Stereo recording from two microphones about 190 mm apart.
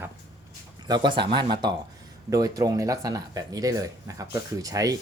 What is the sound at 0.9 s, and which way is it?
Speech, 25° right (ahead or behind).